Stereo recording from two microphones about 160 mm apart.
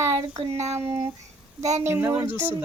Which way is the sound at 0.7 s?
15° right (ahead or behind).